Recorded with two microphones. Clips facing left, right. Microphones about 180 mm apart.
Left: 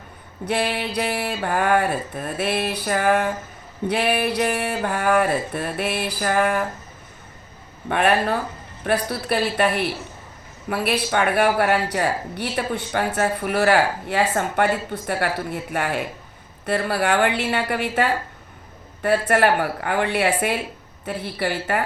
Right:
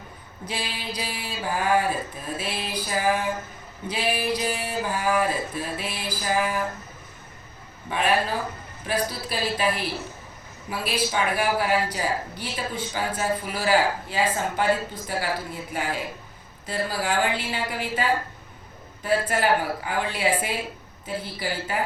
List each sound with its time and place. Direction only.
0.4 s speech: 65° left (ahead or behind)
7.9 s a woman's voice: 65° left (ahead or behind)